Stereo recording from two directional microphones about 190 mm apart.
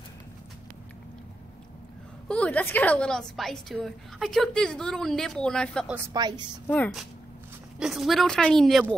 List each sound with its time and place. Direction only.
2.2 s a woman's voice: 5° left (ahead or behind)
6.1 s a woman's voice: 20° right (ahead or behind)
6.7 s a woman's voice: 5° left (ahead or behind)